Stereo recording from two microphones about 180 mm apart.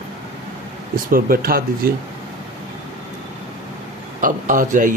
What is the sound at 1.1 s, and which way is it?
Speech, 55° right (ahead or behind).